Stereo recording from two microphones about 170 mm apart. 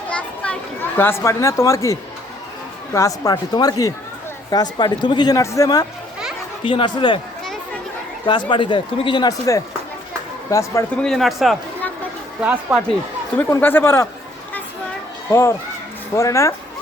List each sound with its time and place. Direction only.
0.1 s a child's voice: 5° left (ahead or behind); by 7.2 s 30° left (ahead or behind)
8.3 s speech: 30° left (ahead or behind)
10.9 s speech: 5° left (ahead or behind)
13.3 s speech: 10° left (ahead or behind)
15.3 s speech: 15° left (ahead or behind)